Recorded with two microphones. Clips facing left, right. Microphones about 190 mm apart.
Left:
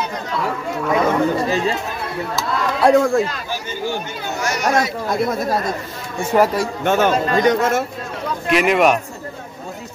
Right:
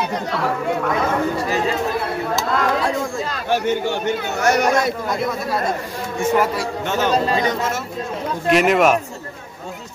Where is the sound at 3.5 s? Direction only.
70° right (ahead or behind).